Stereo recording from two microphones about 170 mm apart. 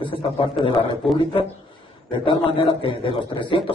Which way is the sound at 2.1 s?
30° left (ahead or behind).